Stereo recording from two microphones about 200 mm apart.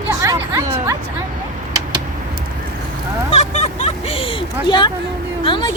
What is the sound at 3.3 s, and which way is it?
Vehicle, 35° left (ahead or behind).